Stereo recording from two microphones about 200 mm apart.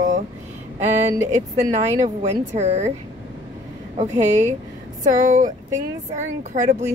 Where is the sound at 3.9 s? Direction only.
35° right (ahead or behind).